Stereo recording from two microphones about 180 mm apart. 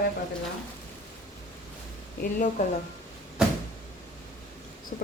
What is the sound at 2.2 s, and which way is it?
Speech, 50° left (ahead or behind).